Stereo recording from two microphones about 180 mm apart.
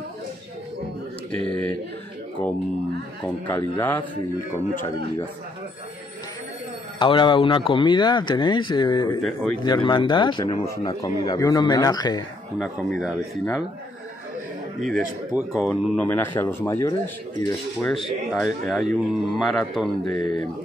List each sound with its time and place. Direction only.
1.4 s a man's voice: 5° left (ahead or behind)
3.4 s speech: 10° left (ahead or behind)
7.0 s speech: 25° left (ahead or behind)
9.2 s a man's voice: centre (ahead or behind)
9.6 s speech: 25° left (ahead or behind)
12.5 s a man's voice: 5° right (ahead or behind)
14.8 s a man's voice: centre (ahead or behind)
18.3 s a man's voice: centre (ahead or behind)
20.1 s speech: 25° left (ahead or behind)